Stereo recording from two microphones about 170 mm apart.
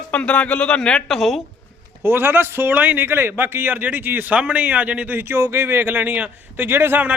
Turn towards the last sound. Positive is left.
turn(degrees=-10)  # may be behind; listen again after turning